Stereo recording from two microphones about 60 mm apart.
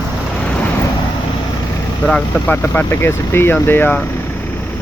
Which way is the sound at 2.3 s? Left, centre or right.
Left.